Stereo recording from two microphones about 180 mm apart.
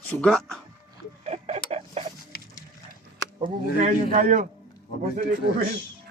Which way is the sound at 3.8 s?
45° right (ahead or behind).